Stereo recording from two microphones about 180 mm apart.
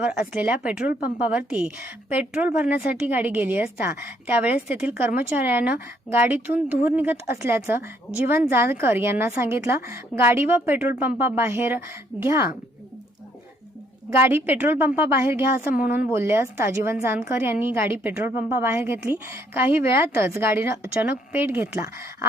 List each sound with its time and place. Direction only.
0.0 s a woman's voice: 10° right (ahead or behind)
14.1 s a woman's voice: 15° right (ahead or behind)
15.5 s speech: 55° left (ahead or behind)
16.1 s a woman's voice: 15° right (ahead or behind)